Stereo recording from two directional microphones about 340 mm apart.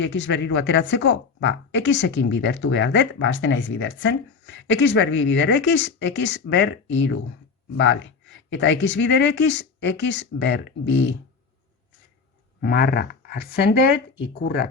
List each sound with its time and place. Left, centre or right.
0.0 s a woman's voice: left
12.6 s speech: left